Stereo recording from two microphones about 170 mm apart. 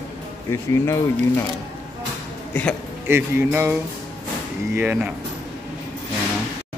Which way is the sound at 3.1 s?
15° right (ahead or behind).